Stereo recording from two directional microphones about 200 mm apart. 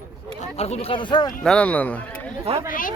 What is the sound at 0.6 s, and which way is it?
Speech, 30° left (ahead or behind).